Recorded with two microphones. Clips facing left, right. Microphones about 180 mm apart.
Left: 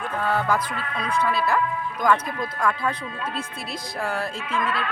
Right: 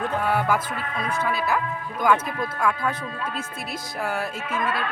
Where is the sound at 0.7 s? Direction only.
25° right (ahead or behind).